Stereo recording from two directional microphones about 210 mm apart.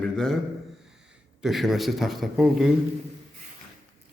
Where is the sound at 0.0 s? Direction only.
5° left (ahead or behind).